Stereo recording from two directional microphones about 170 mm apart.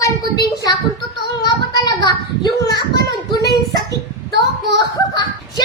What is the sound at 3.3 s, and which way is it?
Child singing, 20° left (ahead or behind).